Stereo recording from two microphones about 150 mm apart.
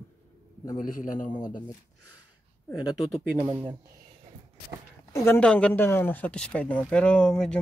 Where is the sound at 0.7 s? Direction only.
65° left (ahead or behind).